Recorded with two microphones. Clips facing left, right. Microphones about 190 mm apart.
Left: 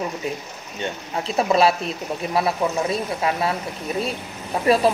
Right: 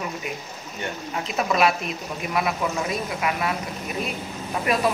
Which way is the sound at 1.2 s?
30° left (ahead or behind).